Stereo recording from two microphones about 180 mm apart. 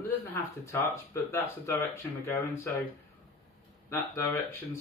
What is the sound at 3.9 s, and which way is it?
Speech, 15° left (ahead or behind).